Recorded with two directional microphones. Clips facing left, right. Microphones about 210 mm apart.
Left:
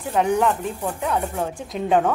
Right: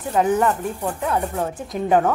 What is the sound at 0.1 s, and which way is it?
A woman's voice, 5° right (ahead or behind).